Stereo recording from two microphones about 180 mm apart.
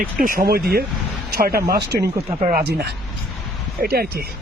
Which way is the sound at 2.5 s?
60° right (ahead or behind).